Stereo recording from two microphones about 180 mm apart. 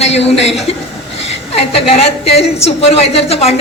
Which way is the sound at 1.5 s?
35° left (ahead or behind).